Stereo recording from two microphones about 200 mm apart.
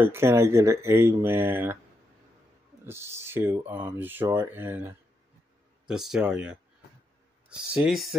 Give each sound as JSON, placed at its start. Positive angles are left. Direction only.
{"t": 0.0, "sound": "speech", "side_deg": -10}
{"t": 2.8, "sound": "speech", "side_deg": -10}